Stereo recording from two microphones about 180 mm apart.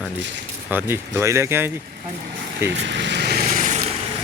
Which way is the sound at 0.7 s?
10° right (ahead or behind).